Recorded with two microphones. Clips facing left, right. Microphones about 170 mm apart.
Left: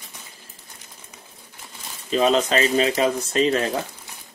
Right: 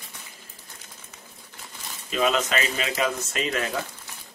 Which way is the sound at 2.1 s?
35° left (ahead or behind).